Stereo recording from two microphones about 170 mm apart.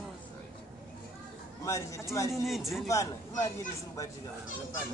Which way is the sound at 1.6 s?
20° left (ahead or behind).